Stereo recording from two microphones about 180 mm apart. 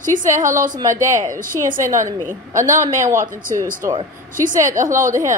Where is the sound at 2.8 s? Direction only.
15° right (ahead or behind).